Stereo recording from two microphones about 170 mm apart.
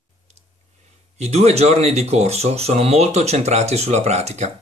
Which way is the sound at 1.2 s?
40° right (ahead or behind).